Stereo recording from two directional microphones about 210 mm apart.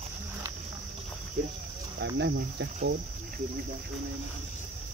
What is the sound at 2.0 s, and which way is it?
Cricket, 55° right (ahead or behind).